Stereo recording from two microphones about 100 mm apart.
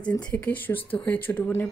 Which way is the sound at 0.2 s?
15° left (ahead or behind).